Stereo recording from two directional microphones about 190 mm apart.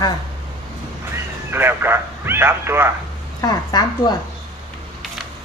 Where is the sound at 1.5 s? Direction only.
10° right (ahead or behind).